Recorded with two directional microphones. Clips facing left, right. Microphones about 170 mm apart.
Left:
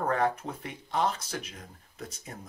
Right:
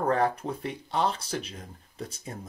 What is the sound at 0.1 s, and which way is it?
Speech, 35° right (ahead or behind).